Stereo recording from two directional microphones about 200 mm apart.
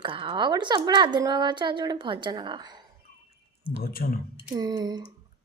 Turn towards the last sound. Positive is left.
turn(degrees=-20)  # may be behind; listen again after turning